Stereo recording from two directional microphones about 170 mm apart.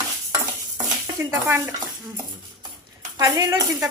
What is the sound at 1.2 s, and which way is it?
Speech, 15° right (ahead or behind).